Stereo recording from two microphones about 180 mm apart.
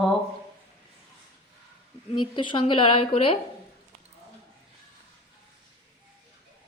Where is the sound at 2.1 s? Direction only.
25° left (ahead or behind).